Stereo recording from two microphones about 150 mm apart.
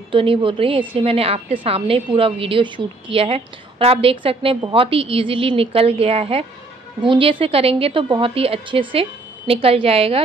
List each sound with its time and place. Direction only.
0.1 s a woman's voice: 35° right (ahead or behind)